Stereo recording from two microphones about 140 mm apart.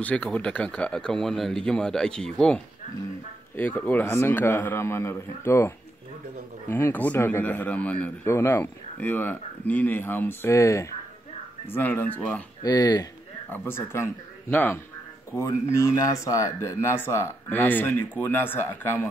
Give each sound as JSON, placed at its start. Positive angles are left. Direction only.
{"t": 0.0, "sound": "speech", "side_deg": 10}
{"t": 6.7, "sound": "speech", "side_deg": 15}
{"t": 12.6, "sound": "speech", "side_deg": 30}
{"t": 13.5, "sound": "speech", "side_deg": 15}